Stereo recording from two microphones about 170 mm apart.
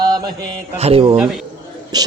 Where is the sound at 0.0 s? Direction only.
25° right (ahead or behind).